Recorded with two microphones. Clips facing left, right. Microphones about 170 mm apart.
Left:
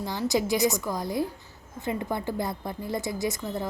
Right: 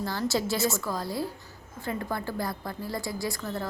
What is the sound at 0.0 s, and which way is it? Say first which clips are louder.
A woman's voice: left 2 dB; 15° left (ahead or behind).